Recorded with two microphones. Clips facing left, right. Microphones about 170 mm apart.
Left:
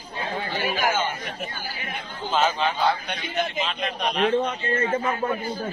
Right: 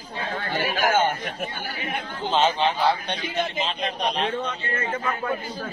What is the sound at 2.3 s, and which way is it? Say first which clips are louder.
A man's voice: right 1 dB; 25° right (ahead or behind).